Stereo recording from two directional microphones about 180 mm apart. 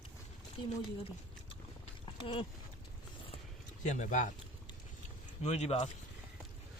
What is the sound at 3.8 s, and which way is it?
Speech, 40° left (ahead or behind).